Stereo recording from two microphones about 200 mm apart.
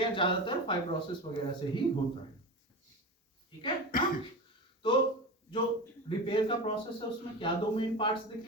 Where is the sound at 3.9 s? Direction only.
45° left (ahead or behind).